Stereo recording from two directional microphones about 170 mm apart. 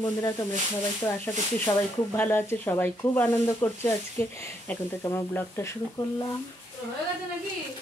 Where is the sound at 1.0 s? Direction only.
10° left (ahead or behind).